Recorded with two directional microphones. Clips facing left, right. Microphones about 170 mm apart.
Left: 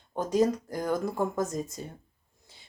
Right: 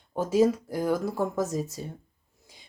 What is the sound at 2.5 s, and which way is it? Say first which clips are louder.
Rub: right 3 dB; 10° right (ahead or behind).